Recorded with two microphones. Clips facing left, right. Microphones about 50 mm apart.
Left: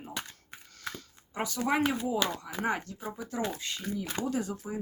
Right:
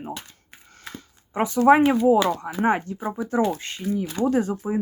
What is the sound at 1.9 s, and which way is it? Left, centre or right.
Speech, right.